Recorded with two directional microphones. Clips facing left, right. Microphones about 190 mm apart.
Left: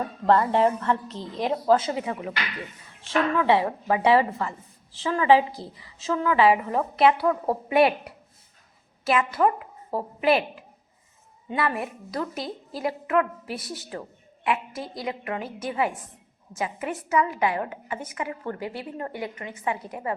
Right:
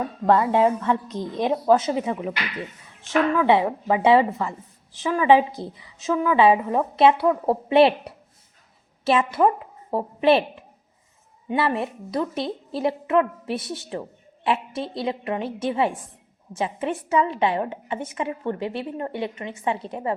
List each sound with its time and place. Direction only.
0.0 s a woman's voice: 10° right (ahead or behind); by 20.1 s 25° right (ahead or behind)